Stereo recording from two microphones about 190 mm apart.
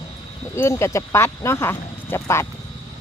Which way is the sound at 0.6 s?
15° left (ahead or behind).